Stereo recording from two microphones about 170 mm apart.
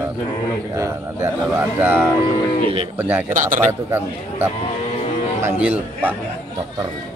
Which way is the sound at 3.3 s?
50° right (ahead or behind).